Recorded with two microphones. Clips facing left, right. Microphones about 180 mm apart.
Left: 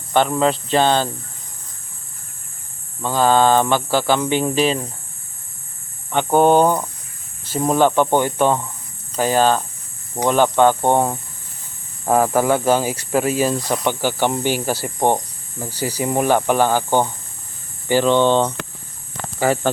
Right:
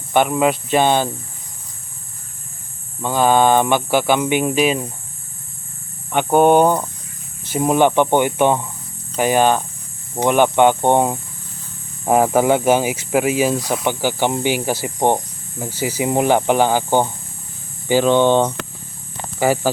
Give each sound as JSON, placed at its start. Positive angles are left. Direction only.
{"t": 0.1, "sound": "speech", "side_deg": -10}
{"t": 3.0, "sound": "speech", "side_deg": -15}
{"t": 6.1, "sound": "speech", "side_deg": -15}